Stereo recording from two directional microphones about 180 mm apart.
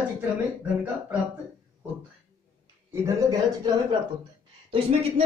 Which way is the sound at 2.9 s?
20° right (ahead or behind).